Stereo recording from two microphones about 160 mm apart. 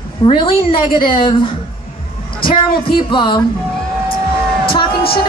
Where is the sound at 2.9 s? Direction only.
30° left (ahead or behind).